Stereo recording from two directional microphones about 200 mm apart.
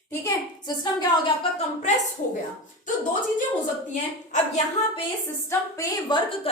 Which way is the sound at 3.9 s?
35° left (ahead or behind).